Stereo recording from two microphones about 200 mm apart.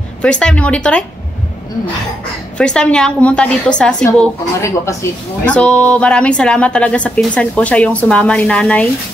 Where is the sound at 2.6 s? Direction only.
5° left (ahead or behind).